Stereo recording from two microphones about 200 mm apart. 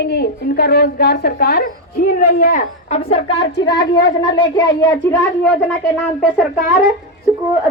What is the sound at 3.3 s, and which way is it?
Speech, 60° left (ahead or behind).